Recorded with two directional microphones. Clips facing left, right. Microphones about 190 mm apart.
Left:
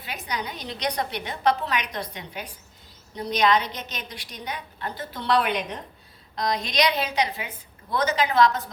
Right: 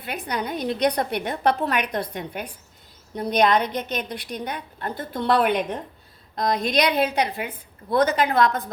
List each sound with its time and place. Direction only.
0.0 s a woman's voice: 55° right (ahead or behind)